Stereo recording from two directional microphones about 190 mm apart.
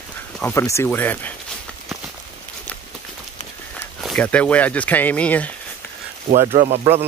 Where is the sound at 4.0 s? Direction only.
5° left (ahead or behind).